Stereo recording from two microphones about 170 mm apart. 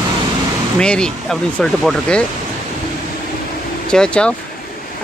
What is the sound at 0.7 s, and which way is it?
Speech, 5° left (ahead or behind).